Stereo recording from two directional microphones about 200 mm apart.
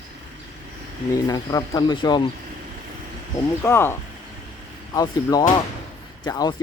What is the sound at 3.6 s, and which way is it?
Speech, 10° left (ahead or behind).